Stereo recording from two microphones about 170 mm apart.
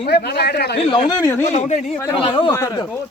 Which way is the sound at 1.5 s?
45° left (ahead or behind).